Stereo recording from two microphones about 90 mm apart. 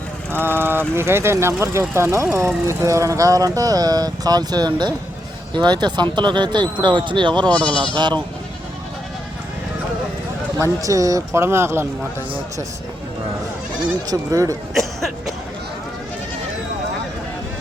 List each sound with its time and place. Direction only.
0.3 s speech: 25° right (ahead or behind); by 7.4 s 60° right (ahead or behind)
7.4 s speech: 15° left (ahead or behind)
7.9 s speech: 55° right (ahead or behind)
10.6 s speech: 40° right (ahead or behind)
14.1 s speech: 40° right (ahead or behind)
14.7 s a sound: centre (ahead or behind)